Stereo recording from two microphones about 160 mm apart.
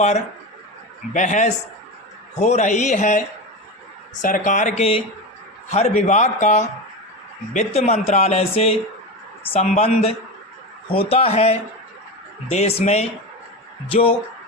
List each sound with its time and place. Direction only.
1.1 s a man's voice: 50° left (ahead or behind)
7.9 s music: 45° left (ahead or behind)